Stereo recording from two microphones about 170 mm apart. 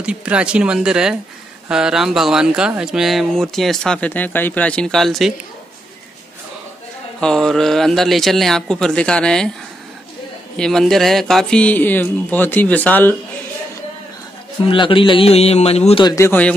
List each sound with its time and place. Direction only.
0.0 s speech: 5° right (ahead or behind)
7.2 s speech: 5° left (ahead or behind)
10.6 s speech: centre (ahead or behind)
14.7 s a man's voice: 30° left (ahead or behind)
16.2 s speech: 10° left (ahead or behind)